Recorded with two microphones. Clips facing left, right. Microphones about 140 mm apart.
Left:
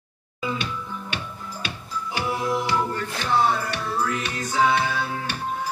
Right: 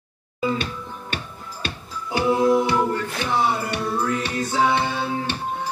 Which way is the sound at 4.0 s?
30° right (ahead or behind).